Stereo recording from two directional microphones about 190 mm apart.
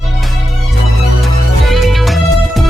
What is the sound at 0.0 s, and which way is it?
Music, centre (ahead or behind).